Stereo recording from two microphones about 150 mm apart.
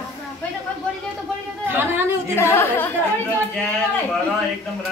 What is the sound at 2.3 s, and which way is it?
Speech, 15° left (ahead or behind).